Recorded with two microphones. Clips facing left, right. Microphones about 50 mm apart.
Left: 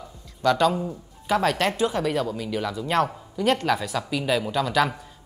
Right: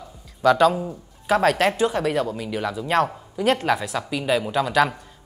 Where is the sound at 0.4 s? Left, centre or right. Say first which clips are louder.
Right 4 dB; centre.